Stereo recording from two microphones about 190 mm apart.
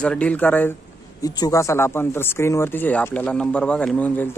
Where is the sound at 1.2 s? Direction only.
20° left (ahead or behind).